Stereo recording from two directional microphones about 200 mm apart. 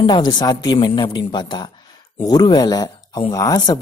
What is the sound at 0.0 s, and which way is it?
Speech, 25° left (ahead or behind).